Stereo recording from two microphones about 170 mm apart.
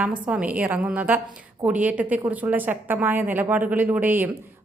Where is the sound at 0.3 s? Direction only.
10° right (ahead or behind).